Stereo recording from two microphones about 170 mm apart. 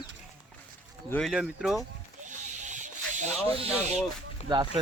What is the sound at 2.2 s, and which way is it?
Owl, 45° right (ahead or behind).